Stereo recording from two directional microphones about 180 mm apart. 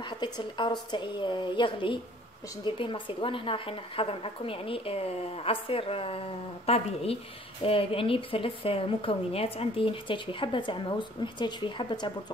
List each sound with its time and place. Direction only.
0.2 s a woman's voice: 25° left (ahead or behind)